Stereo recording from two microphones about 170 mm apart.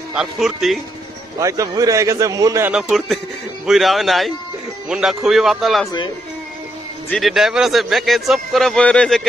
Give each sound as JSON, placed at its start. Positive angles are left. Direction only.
{"t": 0.1, "sound": "a man's voice", "side_deg": -5}
{"t": 1.4, "sound": "a man's voice", "side_deg": -20}
{"t": 2.7, "sound": "a man's voice", "side_deg": -5}
{"t": 7.1, "sound": "a man's voice", "side_deg": 0}